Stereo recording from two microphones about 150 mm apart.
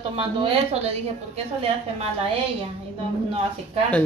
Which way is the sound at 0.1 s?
35° right (ahead or behind).